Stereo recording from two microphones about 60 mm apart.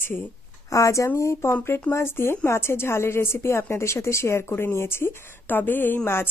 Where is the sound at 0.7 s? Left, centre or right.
Left.